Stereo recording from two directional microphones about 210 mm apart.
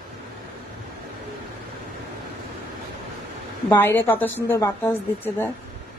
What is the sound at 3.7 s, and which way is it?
A woman's voice, 10° left (ahead or behind).